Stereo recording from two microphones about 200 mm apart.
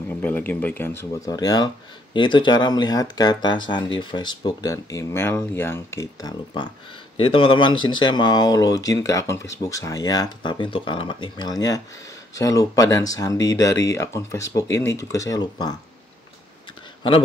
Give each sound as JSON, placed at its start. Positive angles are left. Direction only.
{"t": 0.1, "sound": "speech", "side_deg": 10}